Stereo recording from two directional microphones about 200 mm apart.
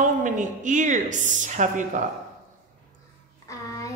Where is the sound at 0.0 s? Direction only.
40° right (ahead or behind).